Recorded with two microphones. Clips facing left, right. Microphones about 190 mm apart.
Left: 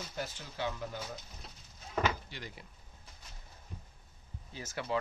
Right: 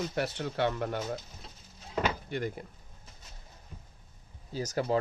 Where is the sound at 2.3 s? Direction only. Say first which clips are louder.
Right 13 dB; 50° right (ahead or behind).